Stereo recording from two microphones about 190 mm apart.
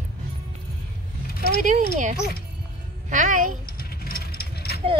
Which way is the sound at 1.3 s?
50° left (ahead or behind).